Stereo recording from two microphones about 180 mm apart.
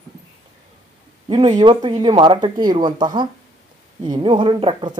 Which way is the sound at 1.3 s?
25° right (ahead or behind).